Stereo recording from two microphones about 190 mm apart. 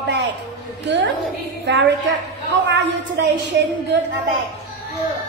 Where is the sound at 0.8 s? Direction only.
70° right (ahead or behind).